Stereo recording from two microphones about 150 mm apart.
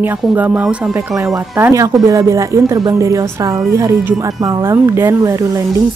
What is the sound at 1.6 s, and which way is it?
Speech, 20° right (ahead or behind).